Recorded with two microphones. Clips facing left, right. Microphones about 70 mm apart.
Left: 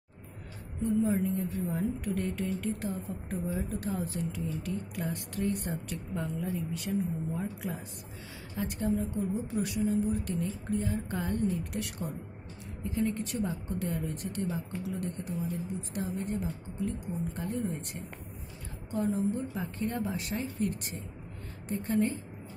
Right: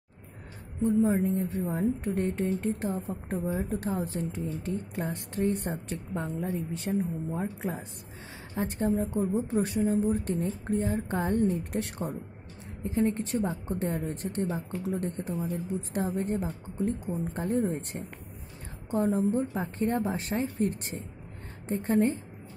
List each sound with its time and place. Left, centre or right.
0.8 s speech: right